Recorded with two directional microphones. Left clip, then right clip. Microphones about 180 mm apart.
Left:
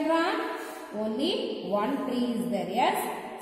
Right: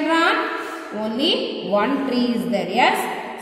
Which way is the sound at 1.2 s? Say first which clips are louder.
Right 11 dB; 20° right (ahead or behind).